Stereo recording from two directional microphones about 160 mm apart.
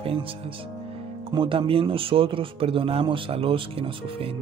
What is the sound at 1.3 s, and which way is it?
Speech, 30° right (ahead or behind).